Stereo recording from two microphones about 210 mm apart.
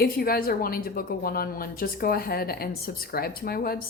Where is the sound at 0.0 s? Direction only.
45° left (ahead or behind).